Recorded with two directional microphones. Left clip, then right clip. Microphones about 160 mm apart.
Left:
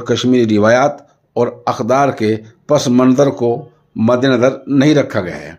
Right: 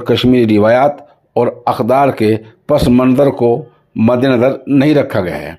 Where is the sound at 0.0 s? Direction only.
20° right (ahead or behind).